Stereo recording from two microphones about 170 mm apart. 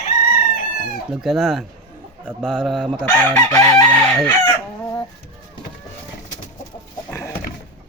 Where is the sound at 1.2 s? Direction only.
Centre (ahead or behind); by 3.8 s 15° left (ahead or behind).